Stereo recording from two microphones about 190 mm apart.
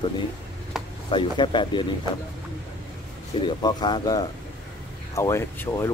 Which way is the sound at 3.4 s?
20° left (ahead or behind).